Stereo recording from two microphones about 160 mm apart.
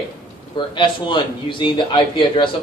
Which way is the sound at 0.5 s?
30° left (ahead or behind).